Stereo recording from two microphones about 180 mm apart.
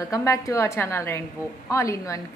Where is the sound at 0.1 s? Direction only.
15° left (ahead or behind).